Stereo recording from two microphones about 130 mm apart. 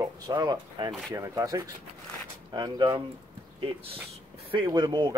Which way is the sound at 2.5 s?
35° right (ahead or behind).